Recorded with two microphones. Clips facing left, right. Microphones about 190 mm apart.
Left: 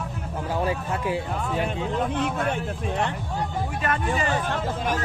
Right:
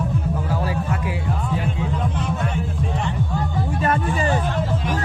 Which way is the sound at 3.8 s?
30° right (ahead or behind).